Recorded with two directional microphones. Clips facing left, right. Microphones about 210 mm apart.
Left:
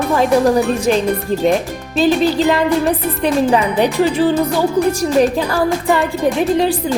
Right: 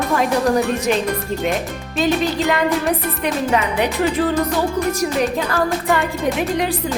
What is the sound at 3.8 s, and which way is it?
Music, 30° left (ahead or behind).